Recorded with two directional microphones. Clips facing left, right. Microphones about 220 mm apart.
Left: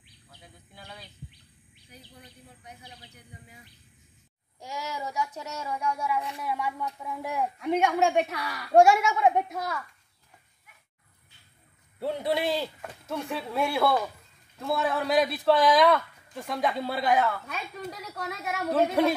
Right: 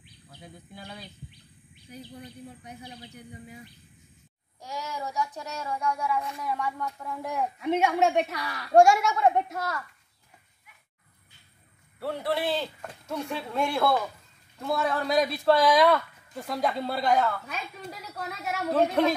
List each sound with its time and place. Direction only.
4.6 s speech: 10° left (ahead or behind)
12.0 s speech: 20° left (ahead or behind)
12.8 s speech: centre (ahead or behind)